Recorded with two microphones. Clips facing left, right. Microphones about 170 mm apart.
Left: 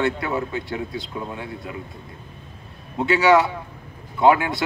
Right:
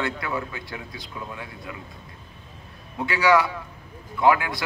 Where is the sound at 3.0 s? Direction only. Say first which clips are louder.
Left 4 dB; 25° left (ahead or behind).